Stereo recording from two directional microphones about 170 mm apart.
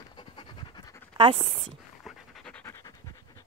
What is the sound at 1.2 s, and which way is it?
Speech, 30° right (ahead or behind).